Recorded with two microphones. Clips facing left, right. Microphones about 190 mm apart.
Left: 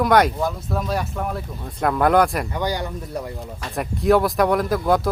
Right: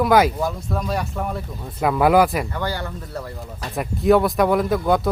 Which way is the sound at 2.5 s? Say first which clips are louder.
Left 2 dB; 15° left (ahead or behind).